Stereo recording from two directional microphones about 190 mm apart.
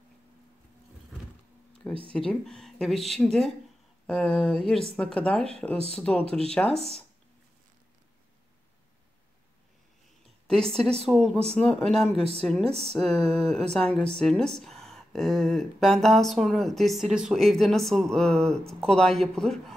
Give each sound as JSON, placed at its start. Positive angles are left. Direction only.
{"t": 2.1, "sound": "speech", "side_deg": 5}
{"t": 11.1, "sound": "speech", "side_deg": 0}
{"t": 12.2, "sound": "a woman's voice", "side_deg": -30}
{"t": 12.9, "sound": "speech", "side_deg": 0}
{"t": 13.2, "sound": "a woman's voice", "side_deg": -30}
{"t": 13.7, "sound": "speech", "side_deg": 5}